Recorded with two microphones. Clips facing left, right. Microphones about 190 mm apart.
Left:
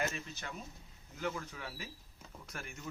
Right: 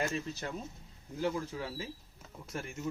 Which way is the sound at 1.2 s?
30° right (ahead or behind).